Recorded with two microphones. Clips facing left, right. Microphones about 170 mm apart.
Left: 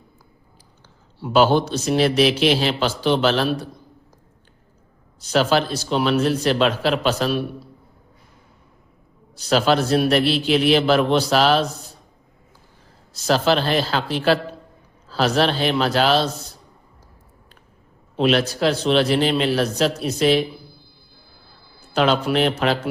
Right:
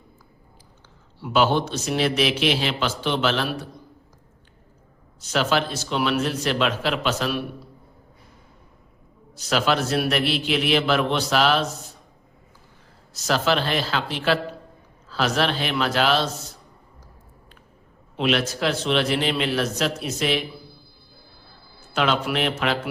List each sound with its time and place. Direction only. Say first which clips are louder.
1.2 s a man's voice: left 4 dB; 35° left (ahead or behind)
5.2 s a man's voice: left 4 dB; 35° left (ahead or behind)
9.3 s a man's voice: left 4 dB; 35° left (ahead or behind)
13.1 s a man's voice: left 4 dB; 30° left (ahead or behind)
18.2 s a man's voice: left 4 dB; 35° left (ahead or behind)
21.9 s a man's voice: left 4 dB; 35° left (ahead or behind)